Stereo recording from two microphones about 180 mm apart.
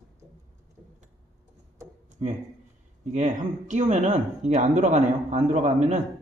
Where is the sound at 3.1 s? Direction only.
40° right (ahead or behind).